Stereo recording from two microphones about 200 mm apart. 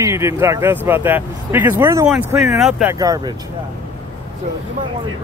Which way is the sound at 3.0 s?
20° right (ahead or behind).